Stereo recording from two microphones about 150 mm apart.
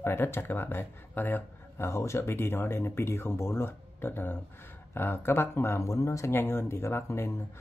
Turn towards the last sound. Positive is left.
turn(degrees=20)  # may be behind; listen again after turning